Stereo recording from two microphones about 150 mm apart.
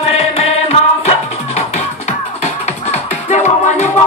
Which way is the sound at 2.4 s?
50° left (ahead or behind).